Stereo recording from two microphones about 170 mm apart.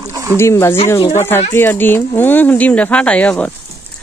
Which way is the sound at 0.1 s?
15° right (ahead or behind).